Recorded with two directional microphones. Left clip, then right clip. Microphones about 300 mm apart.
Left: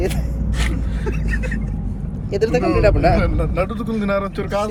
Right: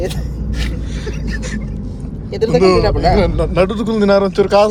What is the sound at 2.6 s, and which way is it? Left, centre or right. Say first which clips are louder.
A man's voice: right 5 dB; centre.